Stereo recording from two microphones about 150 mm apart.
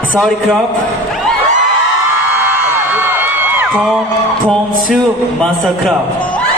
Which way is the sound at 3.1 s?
15° right (ahead or behind).